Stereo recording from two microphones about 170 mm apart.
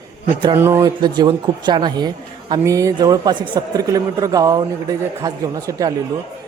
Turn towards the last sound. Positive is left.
turn(degrees=-20)  # may be behind; listen again after turning